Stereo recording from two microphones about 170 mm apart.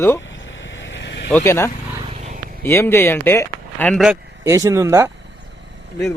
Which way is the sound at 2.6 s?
15° left (ahead or behind).